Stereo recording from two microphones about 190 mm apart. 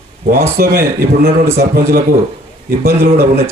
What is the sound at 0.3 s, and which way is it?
A man's voice, 55° right (ahead or behind).